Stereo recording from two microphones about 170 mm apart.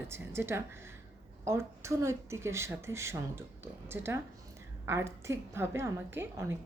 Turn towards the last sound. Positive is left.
turn(degrees=-15)  # may be behind; listen again after turning